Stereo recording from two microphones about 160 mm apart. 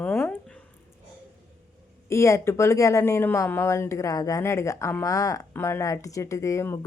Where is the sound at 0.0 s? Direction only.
10° left (ahead or behind).